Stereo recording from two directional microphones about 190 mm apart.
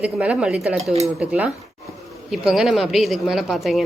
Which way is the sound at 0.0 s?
5° right (ahead or behind).